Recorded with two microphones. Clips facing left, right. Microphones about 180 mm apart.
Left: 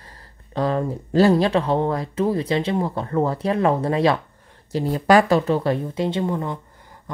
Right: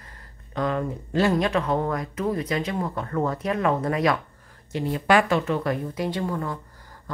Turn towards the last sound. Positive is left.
turn(degrees=20)  # may be behind; listen again after turning